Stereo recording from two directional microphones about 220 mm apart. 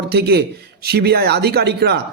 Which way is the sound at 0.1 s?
45° right (ahead or behind).